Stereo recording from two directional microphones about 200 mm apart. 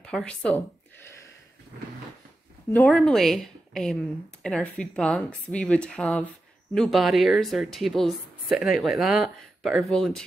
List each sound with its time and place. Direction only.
0.0 s speech: 5° left (ahead or behind)
2.7 s a woman's voice: 5° left (ahead or behind)